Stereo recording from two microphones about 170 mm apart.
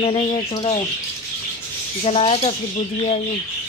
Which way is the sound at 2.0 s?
35° left (ahead or behind).